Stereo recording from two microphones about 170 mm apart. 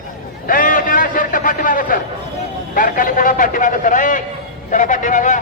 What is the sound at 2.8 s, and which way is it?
A man's voice, 55° left (ahead or behind).